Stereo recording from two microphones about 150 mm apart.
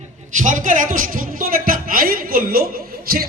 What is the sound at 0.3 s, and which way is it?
A woman's voice, 60° right (ahead or behind).